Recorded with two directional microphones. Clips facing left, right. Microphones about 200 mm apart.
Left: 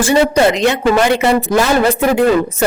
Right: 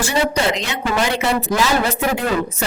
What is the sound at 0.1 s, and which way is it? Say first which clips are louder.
A woman's voice: left 8 dB; 55° left (ahead or behind).